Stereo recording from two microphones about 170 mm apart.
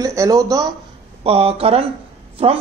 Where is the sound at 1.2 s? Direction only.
35° right (ahead or behind).